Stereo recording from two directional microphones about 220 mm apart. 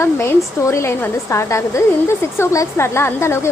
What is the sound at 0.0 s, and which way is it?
A woman's voice, 10° left (ahead or behind).